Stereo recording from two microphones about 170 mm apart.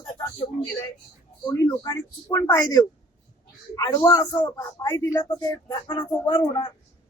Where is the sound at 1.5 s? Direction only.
25° left (ahead or behind).